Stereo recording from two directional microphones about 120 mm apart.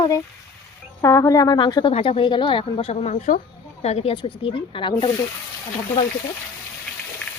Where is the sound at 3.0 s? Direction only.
90° left.